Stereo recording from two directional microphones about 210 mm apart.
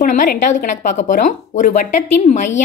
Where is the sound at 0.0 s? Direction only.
40° left (ahead or behind).